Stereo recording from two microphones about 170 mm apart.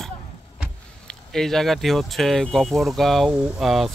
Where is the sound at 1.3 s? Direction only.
Centre (ahead or behind).